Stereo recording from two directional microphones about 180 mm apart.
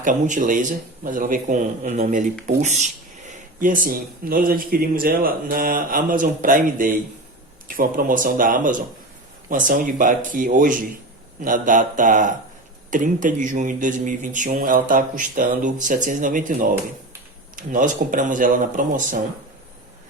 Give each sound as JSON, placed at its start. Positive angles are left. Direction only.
{"t": 0.0, "sound": "speech", "side_deg": -45}